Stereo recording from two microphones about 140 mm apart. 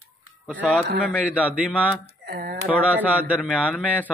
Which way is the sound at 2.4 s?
90° right.